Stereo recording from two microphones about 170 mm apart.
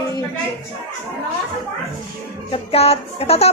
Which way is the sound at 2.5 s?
35° left (ahead or behind).